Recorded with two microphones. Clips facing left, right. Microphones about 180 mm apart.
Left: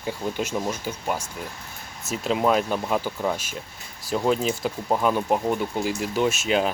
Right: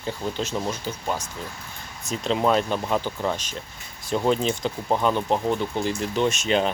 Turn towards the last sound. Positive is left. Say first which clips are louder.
# even
turn(degrees=5)  # may be behind; listen again after turning